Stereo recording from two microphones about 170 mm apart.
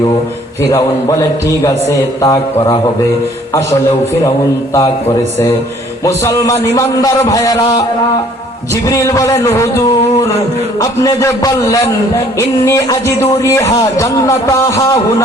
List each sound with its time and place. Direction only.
0.6 s speech: 20° left (ahead or behind)
6.1 s speech: 15° left (ahead or behind)
8.7 s a man's voice: 20° left (ahead or behind)